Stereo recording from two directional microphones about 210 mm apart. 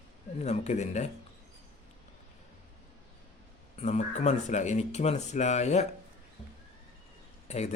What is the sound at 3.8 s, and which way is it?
Speech, 35° left (ahead or behind).